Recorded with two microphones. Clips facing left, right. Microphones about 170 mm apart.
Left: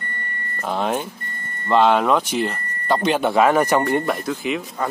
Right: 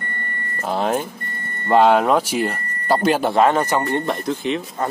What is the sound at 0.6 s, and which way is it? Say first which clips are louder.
Speech: right 2 dB; centre (ahead or behind).